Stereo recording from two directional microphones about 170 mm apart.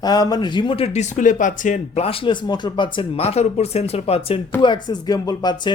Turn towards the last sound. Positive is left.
turn(degrees=25)  # may be behind; listen again after turning